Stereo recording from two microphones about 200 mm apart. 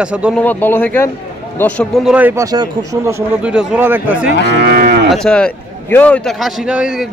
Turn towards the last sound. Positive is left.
turn(degrees=-5)  # may be behind; listen again after turning